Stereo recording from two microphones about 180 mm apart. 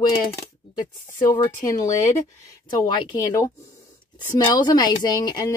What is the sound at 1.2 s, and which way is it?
Speech, 15° left (ahead or behind).